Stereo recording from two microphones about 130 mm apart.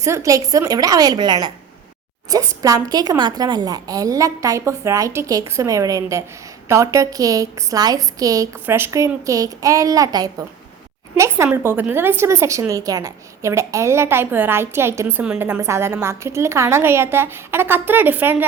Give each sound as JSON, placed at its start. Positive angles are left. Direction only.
{"t": 0.0, "sound": "a woman's voice", "side_deg": -25}
{"t": 11.5, "sound": "a woman's voice", "side_deg": -15}